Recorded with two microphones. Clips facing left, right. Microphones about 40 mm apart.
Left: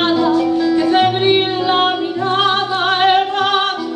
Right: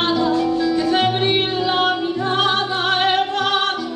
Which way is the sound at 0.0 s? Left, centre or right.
Centre.